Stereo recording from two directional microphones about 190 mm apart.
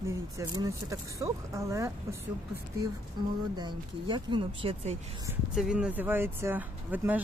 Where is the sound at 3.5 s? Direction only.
25° right (ahead or behind).